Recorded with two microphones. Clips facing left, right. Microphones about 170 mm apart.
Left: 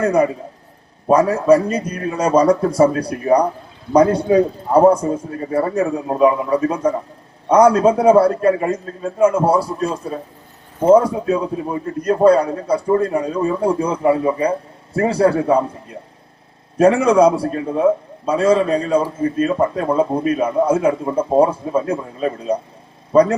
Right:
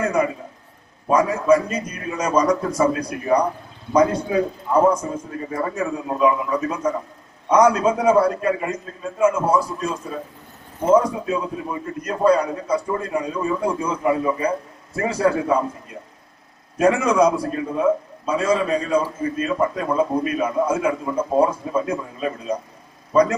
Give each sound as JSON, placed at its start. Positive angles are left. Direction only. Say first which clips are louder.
{"t": 0.0, "sound": "a man's voice", "louder": "left 5 dB", "side_deg": 35}
{"t": 16.7, "sound": "a man's voice", "louder": "left 5 dB", "side_deg": 30}